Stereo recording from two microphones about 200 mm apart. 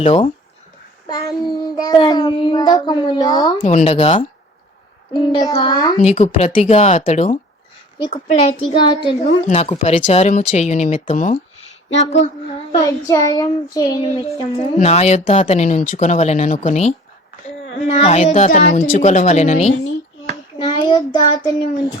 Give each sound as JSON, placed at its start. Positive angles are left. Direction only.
{"t": 0.0, "sound": "child singing", "side_deg": 30}
{"t": 3.6, "sound": "speech", "side_deg": 35}
{"t": 5.1, "sound": "child singing", "side_deg": 20}
{"t": 6.0, "sound": "speech", "side_deg": 35}
{"t": 8.7, "sound": "child singing", "side_deg": 20}
{"t": 9.2, "sound": "speech", "side_deg": 35}
{"t": 12.7, "sound": "child singing", "side_deg": 15}
{"t": 14.8, "sound": "speech", "side_deg": 35}
{"t": 20.6, "sound": "a child's voice", "side_deg": 20}